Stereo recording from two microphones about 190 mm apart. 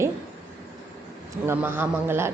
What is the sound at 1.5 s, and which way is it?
Speech, 10° right (ahead or behind).